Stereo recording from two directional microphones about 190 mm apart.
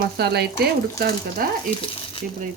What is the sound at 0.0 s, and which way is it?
Speech, 55° right (ahead or behind).